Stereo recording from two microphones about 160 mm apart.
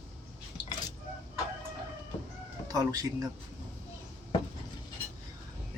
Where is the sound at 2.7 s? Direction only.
20° right (ahead or behind).